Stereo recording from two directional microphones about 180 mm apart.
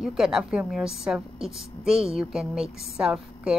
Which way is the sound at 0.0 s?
5° right (ahead or behind).